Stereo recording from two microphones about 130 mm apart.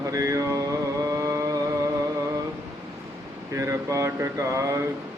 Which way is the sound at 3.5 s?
25° right (ahead or behind).